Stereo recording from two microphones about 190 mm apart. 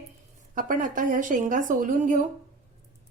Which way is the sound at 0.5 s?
45° right (ahead or behind).